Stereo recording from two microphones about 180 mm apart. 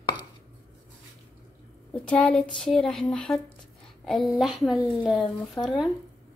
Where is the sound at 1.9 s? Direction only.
5° left (ahead or behind).